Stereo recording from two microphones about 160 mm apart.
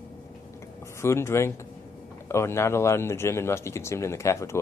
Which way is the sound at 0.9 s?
15° left (ahead or behind).